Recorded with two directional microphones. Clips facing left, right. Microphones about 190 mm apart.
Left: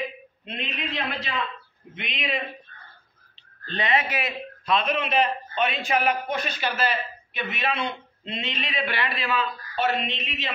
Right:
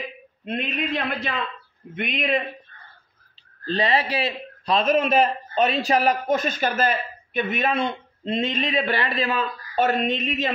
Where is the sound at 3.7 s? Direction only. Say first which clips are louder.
Right 4 dB; 35° right (ahead or behind).